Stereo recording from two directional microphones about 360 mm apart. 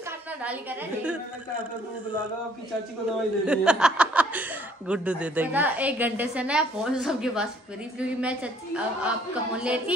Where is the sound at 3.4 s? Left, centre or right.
Centre.